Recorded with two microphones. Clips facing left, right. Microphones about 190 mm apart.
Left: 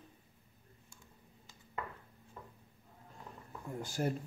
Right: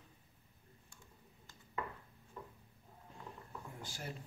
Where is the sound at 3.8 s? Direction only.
45° left (ahead or behind).